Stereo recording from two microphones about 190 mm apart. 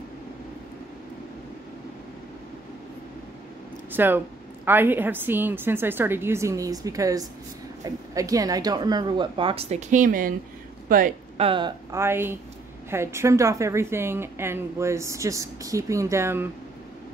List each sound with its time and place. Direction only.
3.9 s a woman's voice: 10° right (ahead or behind); by 11.1 s 45° right (ahead or behind)
11.3 s speech: 30° right (ahead or behind)
12.0 s a woman's voice: 10° right (ahead or behind)